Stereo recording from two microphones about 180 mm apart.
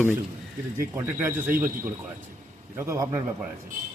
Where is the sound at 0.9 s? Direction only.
15° right (ahead or behind).